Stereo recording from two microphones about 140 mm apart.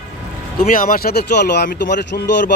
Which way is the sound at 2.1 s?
90° left.